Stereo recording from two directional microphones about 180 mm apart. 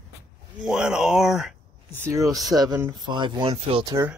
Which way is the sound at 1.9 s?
15° right (ahead or behind).